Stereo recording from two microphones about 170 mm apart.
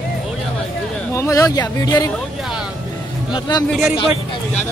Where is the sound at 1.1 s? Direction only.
20° left (ahead or behind).